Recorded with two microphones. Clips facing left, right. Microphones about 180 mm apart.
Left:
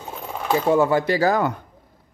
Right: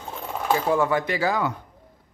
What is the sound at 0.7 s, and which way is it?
Speech, 30° left (ahead or behind).